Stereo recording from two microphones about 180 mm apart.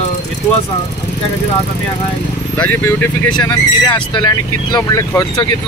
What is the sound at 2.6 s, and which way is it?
Speech, 10° left (ahead or behind).